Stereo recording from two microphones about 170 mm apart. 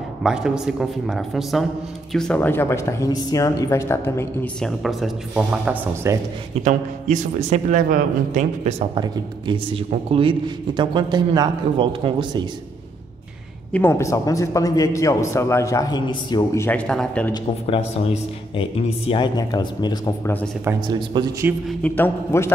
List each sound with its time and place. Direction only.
0.2 s speech: 5° right (ahead or behind)
6.6 s a man's voice: 45° right (ahead or behind); by 12.4 s 30° right (ahead or behind)
13.7 s a man's voice: 15° left (ahead or behind)
17.3 s a man's voice: 30° left (ahead or behind)
20.8 s a man's voice: 25° right (ahead or behind)
21.6 s speech: 10° left (ahead or behind)